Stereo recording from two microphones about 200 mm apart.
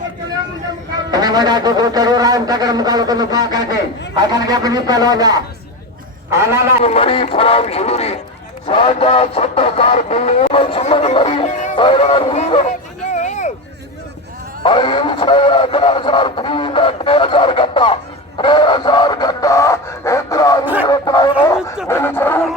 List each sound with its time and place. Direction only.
1.1 s a sound: 20° right (ahead or behind)
6.8 s speech: 30° left (ahead or behind)
11.8 s speech: 25° left (ahead or behind)
13.1 s a sound: 35° left (ahead or behind)
14.6 s speech: 25° left (ahead or behind)
18.3 s music: 25° left (ahead or behind)
20.8 s a sound: 20° left (ahead or behind)
21.4 s bow-wow: 15° left (ahead or behind)
21.8 s speech: 10° left (ahead or behind)